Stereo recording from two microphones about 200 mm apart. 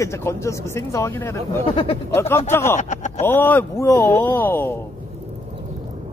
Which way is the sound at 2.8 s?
35° left (ahead or behind).